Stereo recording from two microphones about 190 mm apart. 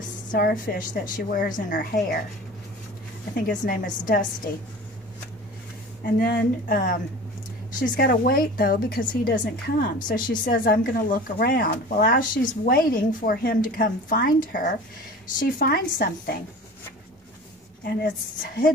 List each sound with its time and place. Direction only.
0.3 s speech: 50° left (ahead or behind)
3.3 s speech: 45° left (ahead or behind)
6.0 s speech: 50° left (ahead or behind)